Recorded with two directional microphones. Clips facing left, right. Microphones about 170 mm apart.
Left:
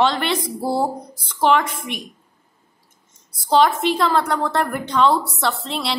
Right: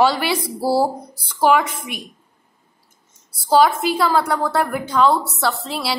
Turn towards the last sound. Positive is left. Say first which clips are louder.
# right 1 dB
turn(degrees=-5)  # may be behind; listen again after turning